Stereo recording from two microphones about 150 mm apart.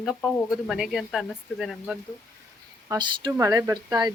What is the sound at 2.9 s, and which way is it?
Speech, 30° right (ahead or behind).